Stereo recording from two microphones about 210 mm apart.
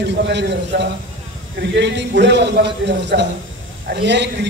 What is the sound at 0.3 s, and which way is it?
A man's voice, 55° right (ahead or behind).